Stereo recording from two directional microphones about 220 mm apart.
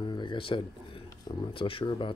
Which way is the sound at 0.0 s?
20° left (ahead or behind).